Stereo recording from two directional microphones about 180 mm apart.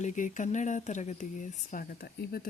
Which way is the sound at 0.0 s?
45° left (ahead or behind).